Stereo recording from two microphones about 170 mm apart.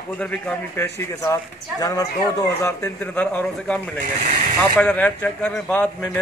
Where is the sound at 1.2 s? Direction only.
20° left (ahead or behind).